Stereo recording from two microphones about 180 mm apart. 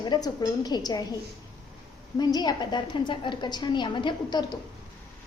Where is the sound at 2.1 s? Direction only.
20° left (ahead or behind).